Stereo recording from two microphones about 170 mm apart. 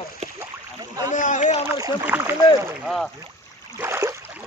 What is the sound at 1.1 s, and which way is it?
Speech, 50° left (ahead or behind).